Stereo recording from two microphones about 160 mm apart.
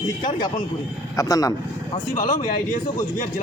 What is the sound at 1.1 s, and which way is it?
Speech, 20° left (ahead or behind).